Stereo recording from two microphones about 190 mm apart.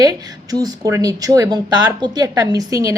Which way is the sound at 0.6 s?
15° right (ahead or behind).